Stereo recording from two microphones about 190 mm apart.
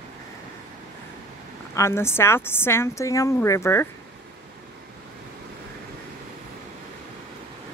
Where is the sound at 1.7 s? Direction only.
15° left (ahead or behind).